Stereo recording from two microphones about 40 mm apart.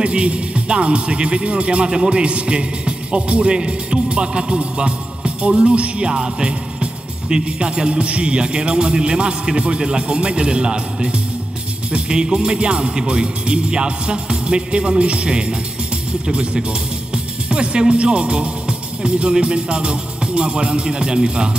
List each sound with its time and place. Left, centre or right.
0.0 s a man's voice: right
16.6 s speech: right